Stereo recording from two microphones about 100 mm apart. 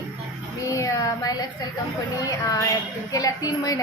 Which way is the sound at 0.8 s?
35° left (ahead or behind).